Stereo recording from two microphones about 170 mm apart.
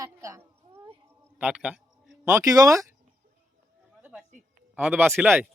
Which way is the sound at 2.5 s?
20° right (ahead or behind).